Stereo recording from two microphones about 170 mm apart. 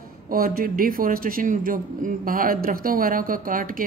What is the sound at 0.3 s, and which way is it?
A man's voice, 60° right (ahead or behind).